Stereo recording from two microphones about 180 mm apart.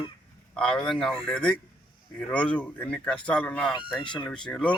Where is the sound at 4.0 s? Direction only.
25° left (ahead or behind).